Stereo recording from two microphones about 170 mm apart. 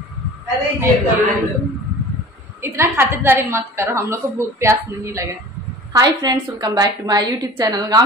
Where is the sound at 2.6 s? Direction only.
15° right (ahead or behind).